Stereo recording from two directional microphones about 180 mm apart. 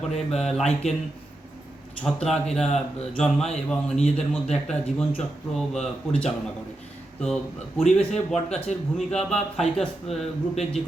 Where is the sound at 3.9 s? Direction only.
40° left (ahead or behind).